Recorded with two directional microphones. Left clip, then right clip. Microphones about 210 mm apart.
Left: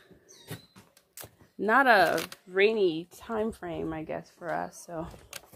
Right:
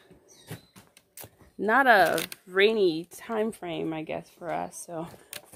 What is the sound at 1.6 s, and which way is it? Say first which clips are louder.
Speech: right 1 dB; 5° right (ahead or behind).